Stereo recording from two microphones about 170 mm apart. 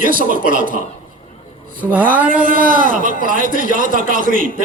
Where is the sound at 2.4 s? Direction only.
55° right (ahead or behind).